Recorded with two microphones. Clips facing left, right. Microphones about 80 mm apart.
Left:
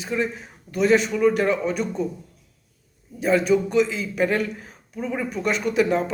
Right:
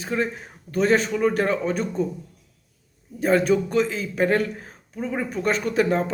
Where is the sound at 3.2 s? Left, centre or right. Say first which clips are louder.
Even; right.